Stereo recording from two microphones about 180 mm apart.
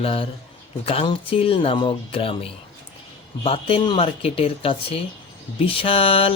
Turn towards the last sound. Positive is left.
turn(degrees=30)  # may be behind; listen again after turning